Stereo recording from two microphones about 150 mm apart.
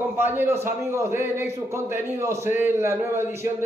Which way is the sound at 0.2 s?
15° right (ahead or behind).